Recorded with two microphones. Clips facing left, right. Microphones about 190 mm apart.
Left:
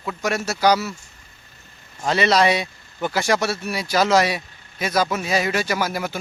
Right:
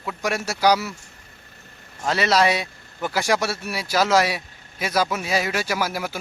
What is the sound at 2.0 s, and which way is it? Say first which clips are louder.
Speech: left 2 dB; 5° right (ahead or behind).